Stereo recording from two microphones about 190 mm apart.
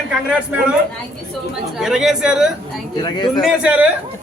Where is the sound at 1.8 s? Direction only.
5° right (ahead or behind).